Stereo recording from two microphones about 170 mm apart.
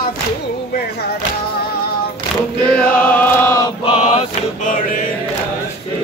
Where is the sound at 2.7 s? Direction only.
10° left (ahead or behind).